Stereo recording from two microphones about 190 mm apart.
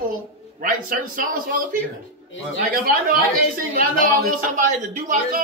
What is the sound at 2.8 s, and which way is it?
A woman's voice, 50° right (ahead or behind).